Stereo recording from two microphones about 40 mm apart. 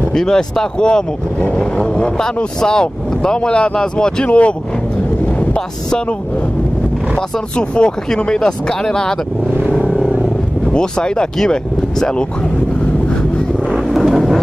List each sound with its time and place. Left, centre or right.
0.1 s speech: centre
1.5 s vehicle: left
2.6 s speech: centre; by 4.6 s left
7.2 s speech: left
10.7 s speech: left
13.7 s vehicle: centre